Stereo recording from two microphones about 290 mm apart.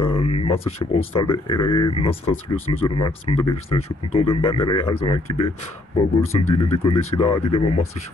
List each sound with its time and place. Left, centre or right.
0.0 s speech: centre
3.7 s speech: left
4.1 s speech: centre